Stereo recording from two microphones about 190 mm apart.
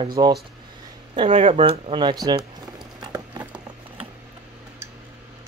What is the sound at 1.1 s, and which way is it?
Speech, 35° right (ahead or behind).